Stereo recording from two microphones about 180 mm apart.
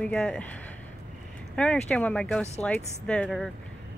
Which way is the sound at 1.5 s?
5° left (ahead or behind).